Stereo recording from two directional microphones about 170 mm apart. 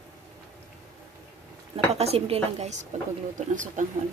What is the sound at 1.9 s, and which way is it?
Speech, 35° right (ahead or behind).